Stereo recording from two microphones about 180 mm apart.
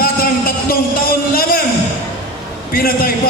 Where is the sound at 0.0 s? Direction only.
55° left (ahead or behind).